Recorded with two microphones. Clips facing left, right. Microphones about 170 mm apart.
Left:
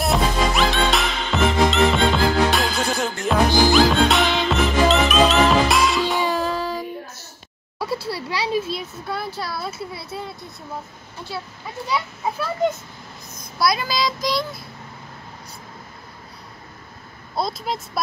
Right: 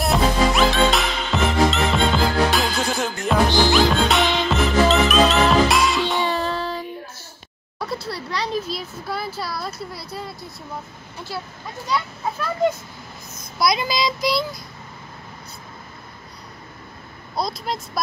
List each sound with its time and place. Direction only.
0.0 s music: centre (ahead or behind)
7.8 s a sound: 5° left (ahead or behind)
9.0 s speech: 5° right (ahead or behind)
11.6 s speech: 5° left (ahead or behind)
13.6 s child singing: 15° right (ahead or behind)
17.4 s speech: centre (ahead or behind)